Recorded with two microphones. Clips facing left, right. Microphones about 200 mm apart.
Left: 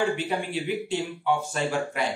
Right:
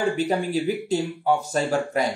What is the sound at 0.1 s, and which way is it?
A woman's voice, 40° right (ahead or behind).